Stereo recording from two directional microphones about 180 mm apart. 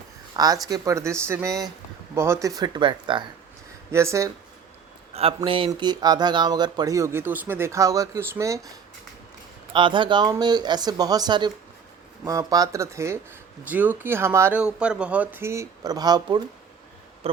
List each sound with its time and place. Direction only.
0.3 s speech: 20° right (ahead or behind)
3.9 s speech: 15° right (ahead or behind)
5.1 s speech: 35° right (ahead or behind)
17.2 s a sound: 30° right (ahead or behind)